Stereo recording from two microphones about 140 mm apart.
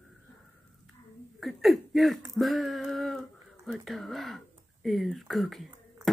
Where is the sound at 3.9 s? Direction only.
Centre (ahead or behind).